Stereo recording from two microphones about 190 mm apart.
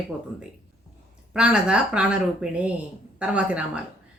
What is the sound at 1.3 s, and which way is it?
A woman's voice, 5° right (ahead or behind).